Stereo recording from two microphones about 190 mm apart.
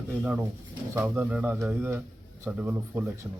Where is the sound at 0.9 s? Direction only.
10° right (ahead or behind).